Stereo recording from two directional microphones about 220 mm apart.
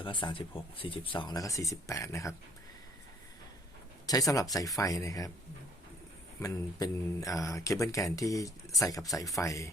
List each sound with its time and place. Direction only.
0.0 s speech: 20° left (ahead or behind)
4.0 s speech: 15° left (ahead or behind)
6.4 s speech: 15° left (ahead or behind)